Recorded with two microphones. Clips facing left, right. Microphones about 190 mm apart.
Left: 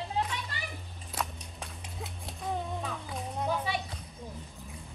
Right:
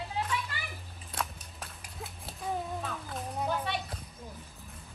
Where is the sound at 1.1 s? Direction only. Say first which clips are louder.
Left 1 dB; centre (ahead or behind).